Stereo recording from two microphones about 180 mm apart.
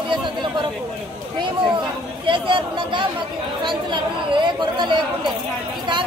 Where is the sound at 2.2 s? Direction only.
30° right (ahead or behind).